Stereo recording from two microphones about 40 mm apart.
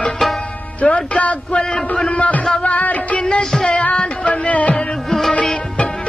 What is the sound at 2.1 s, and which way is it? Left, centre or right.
Music, left.